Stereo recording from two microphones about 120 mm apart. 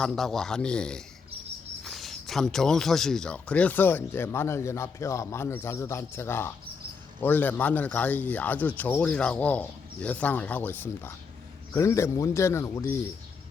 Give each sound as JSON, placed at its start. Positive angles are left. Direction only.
{"t": 0.0, "sound": "a man's voice", "side_deg": 5}